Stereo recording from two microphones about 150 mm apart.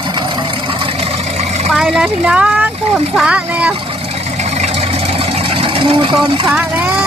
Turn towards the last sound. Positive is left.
turn(degrees=-10)  # may be behind; listen again after turning